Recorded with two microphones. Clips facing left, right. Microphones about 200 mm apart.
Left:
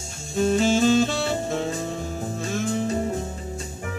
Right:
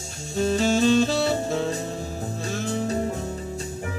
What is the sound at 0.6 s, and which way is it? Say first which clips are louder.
Saxophone: even; 35° right (ahead or behind).